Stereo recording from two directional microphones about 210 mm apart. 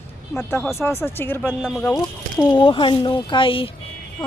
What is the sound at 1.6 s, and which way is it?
Speech, centre (ahead or behind).